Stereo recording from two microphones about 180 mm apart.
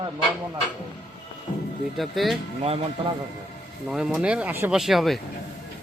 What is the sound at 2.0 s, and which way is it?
Speech, centre (ahead or behind).